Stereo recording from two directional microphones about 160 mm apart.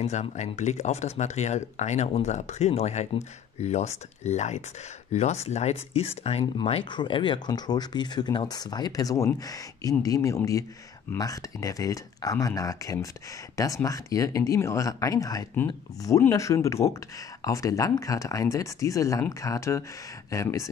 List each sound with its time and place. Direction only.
0.0 s speech: 45° left (ahead or behind); by 20.6 s 20° left (ahead or behind)